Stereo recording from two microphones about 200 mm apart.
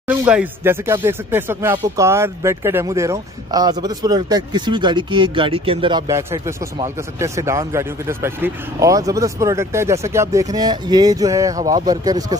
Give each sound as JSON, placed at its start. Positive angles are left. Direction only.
{"t": 0.1, "sound": "speech", "side_deg": -10}